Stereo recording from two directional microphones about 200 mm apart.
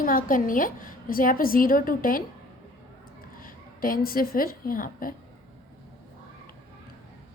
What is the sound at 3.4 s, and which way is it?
A woman's voice, 45° left (ahead or behind).